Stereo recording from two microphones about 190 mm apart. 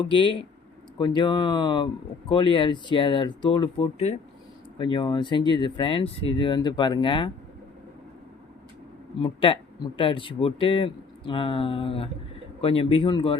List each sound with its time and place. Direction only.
0.1 s speech: 25° left (ahead or behind)
9.2 s speech: 25° left (ahead or behind)